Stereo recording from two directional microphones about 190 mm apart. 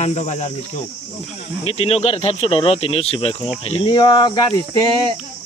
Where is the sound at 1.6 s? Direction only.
30° left (ahead or behind).